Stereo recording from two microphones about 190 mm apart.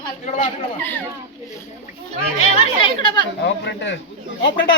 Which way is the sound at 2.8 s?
25° left (ahead or behind).